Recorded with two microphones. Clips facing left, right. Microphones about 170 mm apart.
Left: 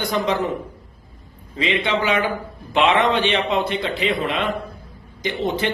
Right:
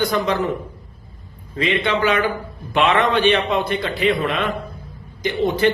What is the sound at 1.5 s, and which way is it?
A man's voice, 15° left (ahead or behind).